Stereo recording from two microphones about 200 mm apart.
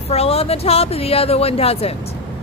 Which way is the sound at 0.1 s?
30° left (ahead or behind).